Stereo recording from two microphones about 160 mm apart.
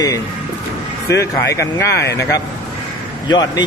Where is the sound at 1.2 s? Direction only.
20° left (ahead or behind).